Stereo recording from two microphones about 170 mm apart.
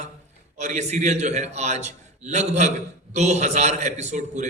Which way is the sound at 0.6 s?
45° right (ahead or behind).